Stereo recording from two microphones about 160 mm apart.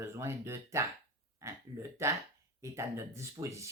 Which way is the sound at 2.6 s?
15° right (ahead or behind).